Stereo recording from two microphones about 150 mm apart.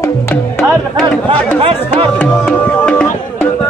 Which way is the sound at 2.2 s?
10° left (ahead or behind).